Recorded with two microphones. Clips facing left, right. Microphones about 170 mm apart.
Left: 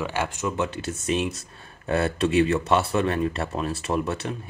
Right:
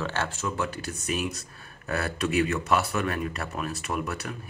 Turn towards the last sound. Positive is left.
turn(degrees=25)  # may be behind; listen again after turning